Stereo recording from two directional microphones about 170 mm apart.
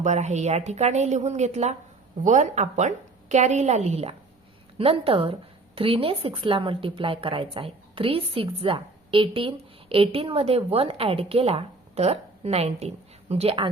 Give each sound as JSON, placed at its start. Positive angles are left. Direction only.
{"t": 0.0, "sound": "a woman's voice", "side_deg": -45}